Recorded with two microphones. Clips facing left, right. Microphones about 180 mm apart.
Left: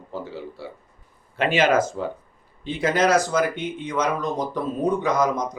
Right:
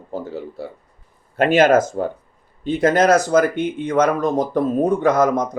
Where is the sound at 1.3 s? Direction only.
45° right (ahead or behind).